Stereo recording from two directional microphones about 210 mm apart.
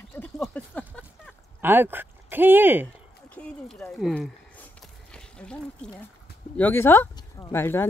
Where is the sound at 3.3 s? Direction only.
5° left (ahead or behind).